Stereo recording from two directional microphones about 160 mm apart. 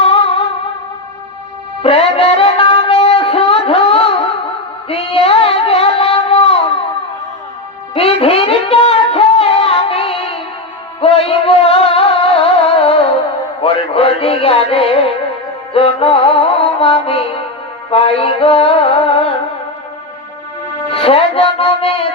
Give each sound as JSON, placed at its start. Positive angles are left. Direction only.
{"t": 0.0, "sound": "music", "side_deg": 35}
{"t": 1.8, "sound": "music", "side_deg": 35}
{"t": 4.9, "sound": "a sound", "side_deg": 35}
{"t": 7.9, "sound": "a sound", "side_deg": 35}
{"t": 11.0, "sound": "music", "side_deg": 35}
{"t": 20.9, "sound": "music", "side_deg": 35}